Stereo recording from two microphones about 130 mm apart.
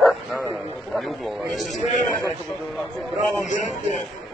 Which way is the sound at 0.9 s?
Centre (ahead or behind).